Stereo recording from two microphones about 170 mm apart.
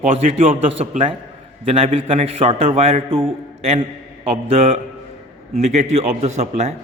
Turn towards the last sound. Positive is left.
turn(degrees=-40)  # may be behind; listen again after turning